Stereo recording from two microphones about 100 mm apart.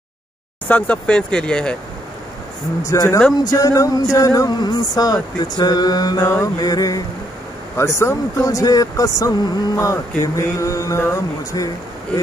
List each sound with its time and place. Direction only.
0.7 s speech: 15° left (ahead or behind)
2.8 s speech: 30° left (ahead or behind)
7.7 s speech: 30° left (ahead or behind)